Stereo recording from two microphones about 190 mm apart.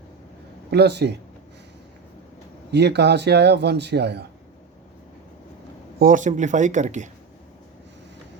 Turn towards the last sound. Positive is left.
turn(degrees=-40)  # may be behind; listen again after turning